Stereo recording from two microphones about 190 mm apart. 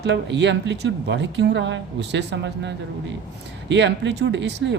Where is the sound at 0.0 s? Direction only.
70° right (ahead or behind).